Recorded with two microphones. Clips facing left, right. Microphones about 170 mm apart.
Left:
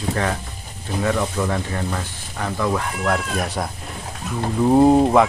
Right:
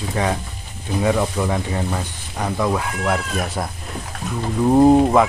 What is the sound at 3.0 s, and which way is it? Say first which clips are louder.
Speech: left 1 dB; centre (ahead or behind).